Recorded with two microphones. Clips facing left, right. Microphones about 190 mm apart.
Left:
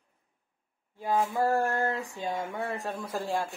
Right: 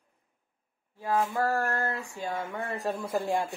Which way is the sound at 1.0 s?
15° left (ahead or behind).